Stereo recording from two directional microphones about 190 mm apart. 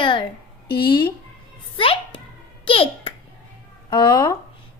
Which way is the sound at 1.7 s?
30° left (ahead or behind).